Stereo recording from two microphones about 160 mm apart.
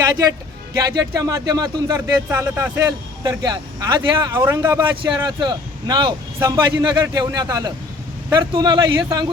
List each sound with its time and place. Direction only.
0.0 s speech: 25° right (ahead or behind)
3.2 s speech: 25° right (ahead or behind)